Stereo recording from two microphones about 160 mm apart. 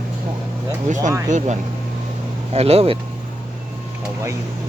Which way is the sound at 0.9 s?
50° right (ahead or behind).